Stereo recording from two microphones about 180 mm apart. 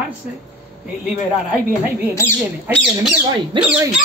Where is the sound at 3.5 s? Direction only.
25° right (ahead or behind).